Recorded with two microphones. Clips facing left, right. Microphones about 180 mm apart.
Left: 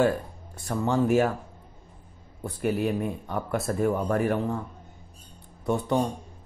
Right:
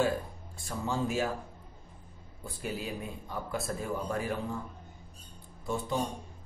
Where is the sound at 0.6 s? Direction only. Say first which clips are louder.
Left 8 dB; 65° left (ahead or behind).